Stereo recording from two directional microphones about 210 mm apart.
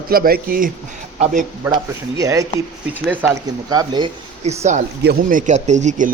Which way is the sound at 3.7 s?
20° right (ahead or behind).